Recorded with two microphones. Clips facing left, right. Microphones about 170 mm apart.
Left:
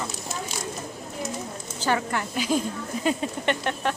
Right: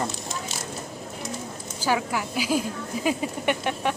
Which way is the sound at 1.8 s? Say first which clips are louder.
Even; 5° right (ahead or behind).